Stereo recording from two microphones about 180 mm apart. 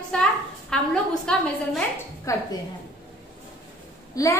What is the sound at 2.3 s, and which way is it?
Speech, 20° left (ahead or behind).